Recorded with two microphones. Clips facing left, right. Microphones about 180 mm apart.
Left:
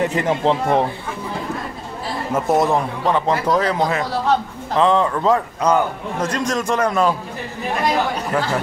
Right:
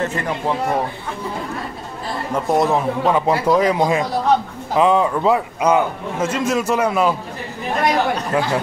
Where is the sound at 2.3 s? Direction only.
Centre (ahead or behind).